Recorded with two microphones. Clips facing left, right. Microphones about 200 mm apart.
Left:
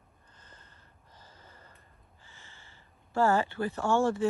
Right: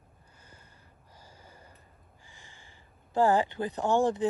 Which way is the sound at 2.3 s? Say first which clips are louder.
Even; 15° right (ahead or behind).